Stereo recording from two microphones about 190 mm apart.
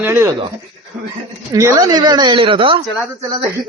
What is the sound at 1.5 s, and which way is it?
Speech, 20° right (ahead or behind).